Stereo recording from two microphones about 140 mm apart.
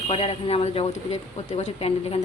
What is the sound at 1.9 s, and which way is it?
Speech, 50° left (ahead or behind).